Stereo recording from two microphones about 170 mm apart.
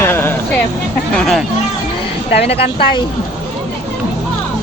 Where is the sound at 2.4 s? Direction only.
35° left (ahead or behind).